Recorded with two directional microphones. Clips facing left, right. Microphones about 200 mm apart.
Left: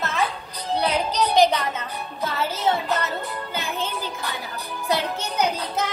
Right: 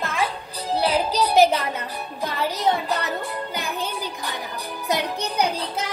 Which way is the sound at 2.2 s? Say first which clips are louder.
Right 1 dB; 15° right (ahead or behind).